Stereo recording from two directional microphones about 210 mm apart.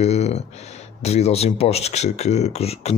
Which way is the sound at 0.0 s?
30° left (ahead or behind).